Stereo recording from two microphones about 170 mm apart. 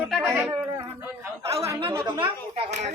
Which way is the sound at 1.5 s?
35° right (ahead or behind).